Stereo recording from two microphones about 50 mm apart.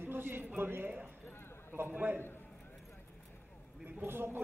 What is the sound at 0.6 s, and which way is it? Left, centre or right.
A man's voice, right.